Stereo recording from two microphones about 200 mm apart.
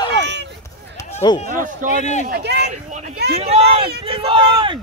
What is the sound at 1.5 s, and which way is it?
Speech, 40° right (ahead or behind).